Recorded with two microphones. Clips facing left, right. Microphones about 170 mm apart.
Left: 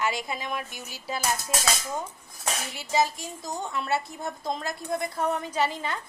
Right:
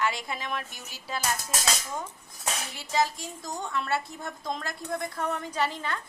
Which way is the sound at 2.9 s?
20° left (ahead or behind).